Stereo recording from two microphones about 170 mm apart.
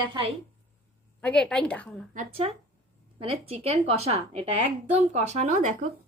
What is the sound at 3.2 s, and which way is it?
A woman's voice, 35° right (ahead or behind).